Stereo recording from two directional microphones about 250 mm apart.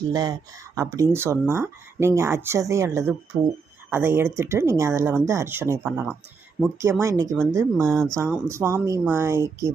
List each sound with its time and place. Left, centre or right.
0.0 s speech: centre